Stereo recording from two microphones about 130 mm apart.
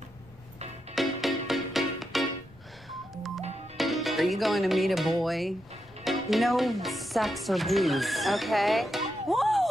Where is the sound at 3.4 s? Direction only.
55° right (ahead or behind).